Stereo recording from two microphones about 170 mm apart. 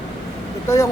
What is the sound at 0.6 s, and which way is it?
Speech, 15° left (ahead or behind).